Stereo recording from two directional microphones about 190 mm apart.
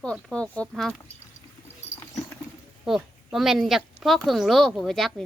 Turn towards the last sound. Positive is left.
turn(degrees=0)  # may be behind; listen again after turning